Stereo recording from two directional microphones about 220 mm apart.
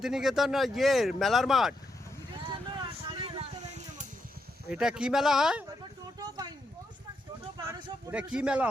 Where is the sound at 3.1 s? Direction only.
25° right (ahead or behind).